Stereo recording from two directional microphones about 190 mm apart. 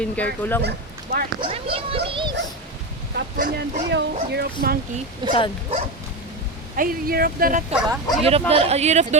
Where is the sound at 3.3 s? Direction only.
50° right (ahead or behind).